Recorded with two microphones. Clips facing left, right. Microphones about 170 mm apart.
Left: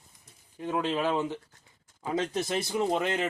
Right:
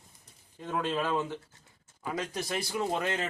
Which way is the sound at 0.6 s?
15° left (ahead or behind).